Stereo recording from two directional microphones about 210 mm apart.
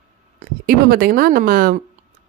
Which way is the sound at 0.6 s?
45° right (ahead or behind).